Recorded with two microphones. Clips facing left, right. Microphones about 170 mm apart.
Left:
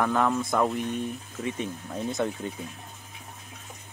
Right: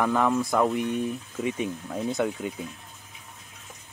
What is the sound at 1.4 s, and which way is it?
Speech, 15° right (ahead or behind).